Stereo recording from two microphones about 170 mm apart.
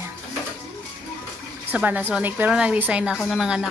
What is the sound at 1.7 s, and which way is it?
Speech, 10° right (ahead or behind).